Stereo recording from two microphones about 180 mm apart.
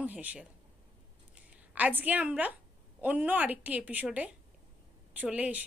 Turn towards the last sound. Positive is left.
turn(degrees=-10)  # may be behind; listen again after turning